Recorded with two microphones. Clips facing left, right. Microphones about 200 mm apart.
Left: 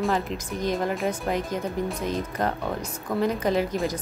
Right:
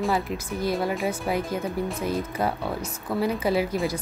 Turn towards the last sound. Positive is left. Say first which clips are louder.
# even
turn(degrees=-10)  # may be behind; listen again after turning